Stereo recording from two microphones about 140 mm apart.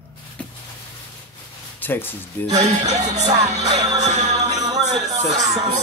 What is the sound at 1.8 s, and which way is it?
Speech, 15° left (ahead or behind).